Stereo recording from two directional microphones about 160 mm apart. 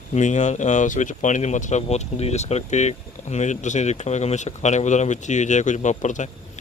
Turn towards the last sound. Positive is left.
turn(degrees=50)  # may be behind; listen again after turning